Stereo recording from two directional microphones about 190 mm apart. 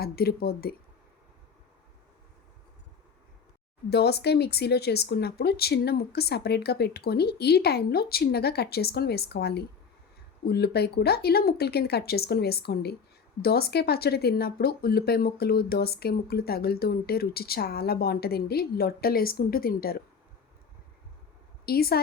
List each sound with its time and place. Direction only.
0.0 s speech: 55° left (ahead or behind)
3.8 s speech: 60° left (ahead or behind)
21.7 s speech: 55° left (ahead or behind)